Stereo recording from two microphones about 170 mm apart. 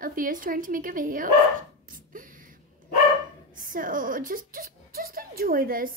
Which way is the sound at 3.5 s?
55° right (ahead or behind).